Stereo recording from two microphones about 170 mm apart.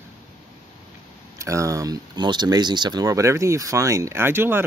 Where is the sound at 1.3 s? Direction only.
20° right (ahead or behind).